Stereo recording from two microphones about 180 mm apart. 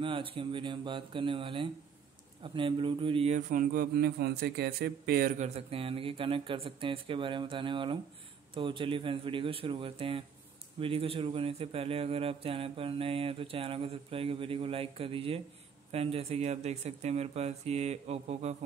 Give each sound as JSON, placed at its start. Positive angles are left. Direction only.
{"t": 0.0, "sound": "a man's voice", "side_deg": -30}
{"t": 5.4, "sound": "speech", "side_deg": -30}